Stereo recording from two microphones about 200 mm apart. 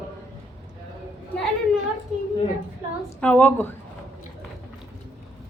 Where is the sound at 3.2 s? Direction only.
5° left (ahead or behind).